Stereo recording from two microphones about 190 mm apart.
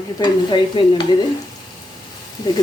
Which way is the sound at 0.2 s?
25° left (ahead or behind).